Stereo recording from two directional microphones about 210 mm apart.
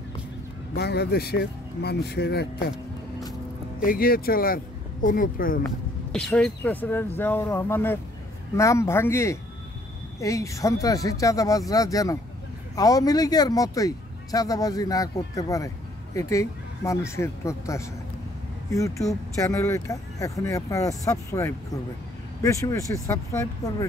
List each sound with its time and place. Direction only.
0.7 s speech: 50° left (ahead or behind)
3.8 s speech: 45° left (ahead or behind)
6.1 s speech: 5° left (ahead or behind)